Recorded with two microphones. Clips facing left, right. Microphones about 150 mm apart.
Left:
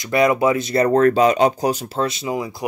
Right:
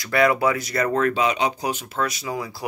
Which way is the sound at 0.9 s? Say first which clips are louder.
Left 7 dB; 40° left (ahead or behind).